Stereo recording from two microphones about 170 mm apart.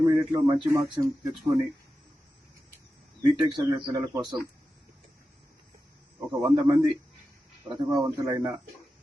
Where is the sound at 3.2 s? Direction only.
25° right (ahead or behind).